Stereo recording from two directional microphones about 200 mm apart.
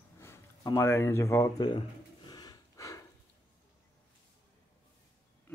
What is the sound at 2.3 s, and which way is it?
Snort, 20° left (ahead or behind).